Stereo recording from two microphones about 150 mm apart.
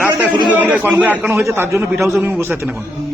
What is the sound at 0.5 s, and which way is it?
A man's voice, 10° right (ahead or behind).